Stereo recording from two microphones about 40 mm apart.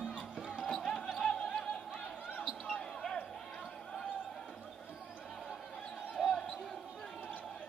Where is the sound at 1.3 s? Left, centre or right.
Centre.